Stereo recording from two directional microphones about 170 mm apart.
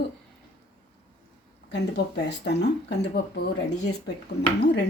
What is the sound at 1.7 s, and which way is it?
Speech, 80° left.